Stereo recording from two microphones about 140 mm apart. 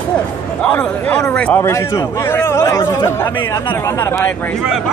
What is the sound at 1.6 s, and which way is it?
Speech, 20° left (ahead or behind).